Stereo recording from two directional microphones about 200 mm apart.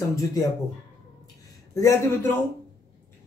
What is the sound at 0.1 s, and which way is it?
Speech, 15° left (ahead or behind).